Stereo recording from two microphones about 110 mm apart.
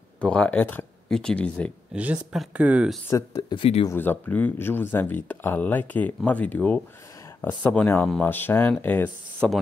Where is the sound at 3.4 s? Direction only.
50° left (ahead or behind).